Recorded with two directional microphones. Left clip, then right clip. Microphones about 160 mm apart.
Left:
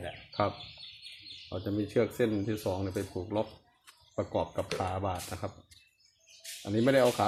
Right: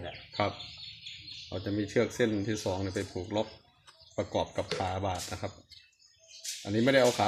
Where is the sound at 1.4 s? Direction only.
Centre (ahead or behind).